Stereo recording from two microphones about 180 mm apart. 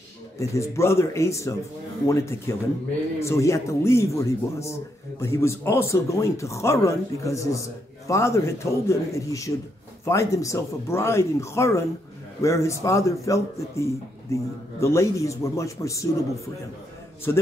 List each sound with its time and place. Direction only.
0.4 s speech: 15° left (ahead or behind)
17.3 s speech: 15° left (ahead or behind)